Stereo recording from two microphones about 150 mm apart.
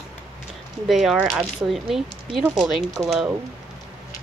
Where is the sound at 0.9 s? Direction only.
Centre (ahead or behind).